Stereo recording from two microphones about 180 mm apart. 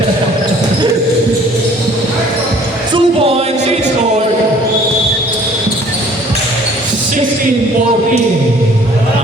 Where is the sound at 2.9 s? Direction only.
30° right (ahead or behind).